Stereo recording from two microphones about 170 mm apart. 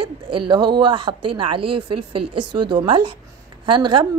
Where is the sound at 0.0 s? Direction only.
25° right (ahead or behind).